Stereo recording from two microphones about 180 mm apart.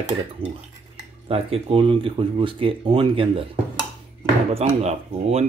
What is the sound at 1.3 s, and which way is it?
Speech, 30° right (ahead or behind).